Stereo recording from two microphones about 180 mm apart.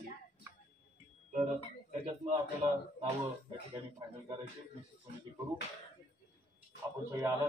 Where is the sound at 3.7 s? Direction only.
20° right (ahead or behind).